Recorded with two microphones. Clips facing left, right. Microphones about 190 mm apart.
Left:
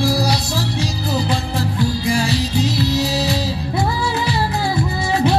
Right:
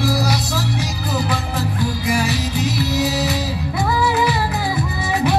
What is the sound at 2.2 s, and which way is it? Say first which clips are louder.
Music: left 2 dB; 20° right (ahead or behind).